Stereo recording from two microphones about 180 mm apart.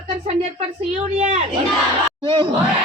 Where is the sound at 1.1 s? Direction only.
40° right (ahead or behind).